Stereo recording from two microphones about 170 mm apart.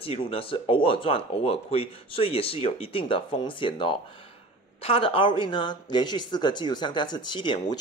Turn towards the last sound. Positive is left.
turn(degrees=25)  # may be behind; listen again after turning